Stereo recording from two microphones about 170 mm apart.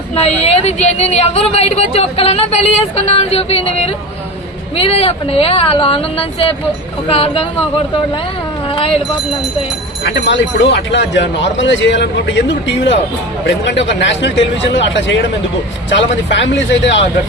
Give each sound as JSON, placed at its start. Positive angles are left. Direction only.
{"t": 0.2, "sound": "speech", "side_deg": 40}
{"t": 10.0, "sound": "speech", "side_deg": 90}
{"t": 16.3, "sound": "speech", "side_deg": 90}